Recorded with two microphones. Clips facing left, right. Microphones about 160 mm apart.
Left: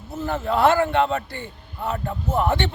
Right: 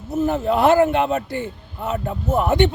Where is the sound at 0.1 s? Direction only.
20° right (ahead or behind).